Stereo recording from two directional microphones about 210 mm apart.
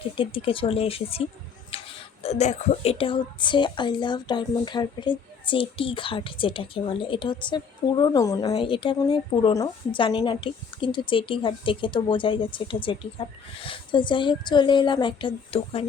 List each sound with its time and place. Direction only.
0.2 s speech: 25° left (ahead or behind)